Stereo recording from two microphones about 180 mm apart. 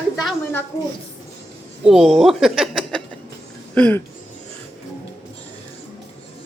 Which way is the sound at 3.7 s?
10° left (ahead or behind).